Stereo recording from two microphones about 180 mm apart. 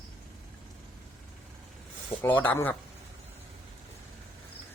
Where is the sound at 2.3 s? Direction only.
10° left (ahead or behind).